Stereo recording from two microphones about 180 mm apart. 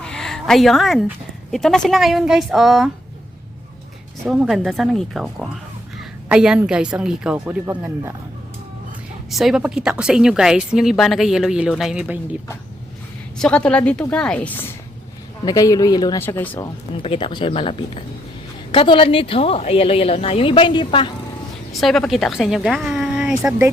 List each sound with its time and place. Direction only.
0.0 s speech: 5° left (ahead or behind)
4.3 s a woman's voice: centre (ahead or behind)
9.3 s a woman's voice: centre (ahead or behind)
13.4 s a woman's voice: 5° left (ahead or behind)
16.6 s a woman's voice: 30° left (ahead or behind)
21.7 s a woman's voice: centre (ahead or behind)